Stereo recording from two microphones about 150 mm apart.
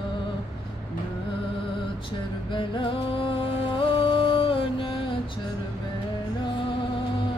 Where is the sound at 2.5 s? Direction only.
35° left (ahead or behind).